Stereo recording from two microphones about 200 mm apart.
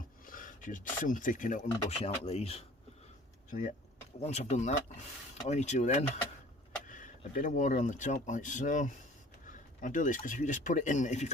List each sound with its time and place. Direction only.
0.3 s speech: 45° left (ahead or behind)
3.5 s speech: 45° left (ahead or behind)